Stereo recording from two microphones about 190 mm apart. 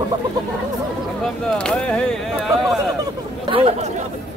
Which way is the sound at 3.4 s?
30° right (ahead or behind).